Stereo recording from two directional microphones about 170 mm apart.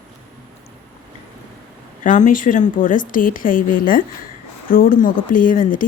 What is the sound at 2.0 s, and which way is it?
Speech, 45° left (ahead or behind).